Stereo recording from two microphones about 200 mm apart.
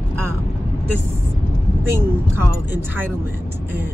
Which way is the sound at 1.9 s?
10° right (ahead or behind).